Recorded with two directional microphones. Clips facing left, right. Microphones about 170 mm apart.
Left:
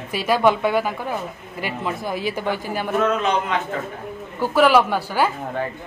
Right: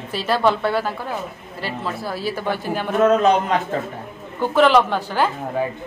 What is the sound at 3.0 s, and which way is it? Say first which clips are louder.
Speech: right 8 dB; 40° right (ahead or behind).